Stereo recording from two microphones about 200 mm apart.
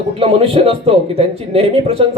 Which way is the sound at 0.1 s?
30° right (ahead or behind).